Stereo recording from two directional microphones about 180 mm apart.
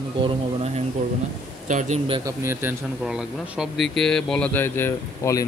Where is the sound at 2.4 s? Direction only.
15° right (ahead or behind).